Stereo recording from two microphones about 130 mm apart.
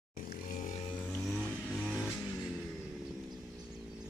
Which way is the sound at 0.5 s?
75° left (ahead or behind).